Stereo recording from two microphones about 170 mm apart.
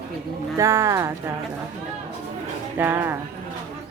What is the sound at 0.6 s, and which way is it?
Speech, 20° right (ahead or behind).